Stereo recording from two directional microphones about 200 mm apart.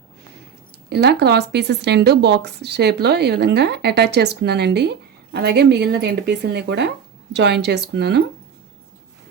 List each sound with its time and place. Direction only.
0.9 s speech: 55° right (ahead or behind)